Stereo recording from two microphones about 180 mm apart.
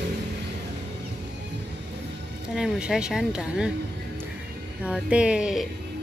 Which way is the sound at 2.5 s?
5° right (ahead or behind).